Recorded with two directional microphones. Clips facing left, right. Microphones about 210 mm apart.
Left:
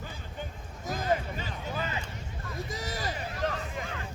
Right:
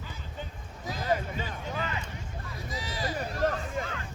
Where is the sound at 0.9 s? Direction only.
45° left (ahead or behind).